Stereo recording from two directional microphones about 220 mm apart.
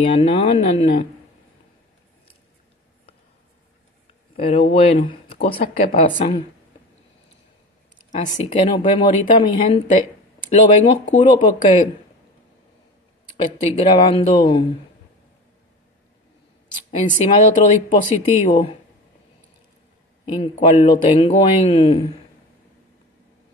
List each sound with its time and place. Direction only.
0.4 s speech: 25° left (ahead or behind)
4.4 s speech: 25° left (ahead or behind)
8.1 s speech: 35° left (ahead or behind)
8.7 s speech: 20° left (ahead or behind)
10.5 s speech: 35° left (ahead or behind)
13.6 s speech: 25° left (ahead or behind)
17.0 s speech: 35° left (ahead or behind)
20.3 s speech: 30° left (ahead or behind)